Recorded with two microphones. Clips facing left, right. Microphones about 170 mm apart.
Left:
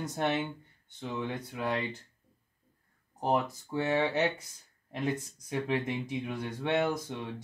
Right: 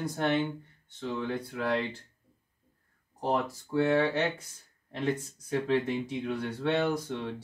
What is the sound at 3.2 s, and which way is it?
Speech, 20° left (ahead or behind).